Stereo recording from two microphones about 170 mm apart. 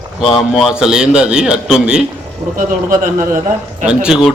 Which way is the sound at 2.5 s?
50° right (ahead or behind).